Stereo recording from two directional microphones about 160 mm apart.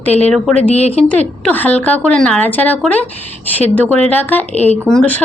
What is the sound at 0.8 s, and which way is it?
Speech, 40° left (ahead or behind).